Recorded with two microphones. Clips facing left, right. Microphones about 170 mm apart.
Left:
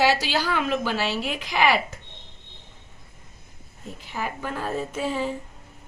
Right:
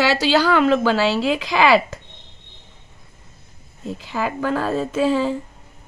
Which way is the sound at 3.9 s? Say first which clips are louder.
Right 7 dB; 90° right.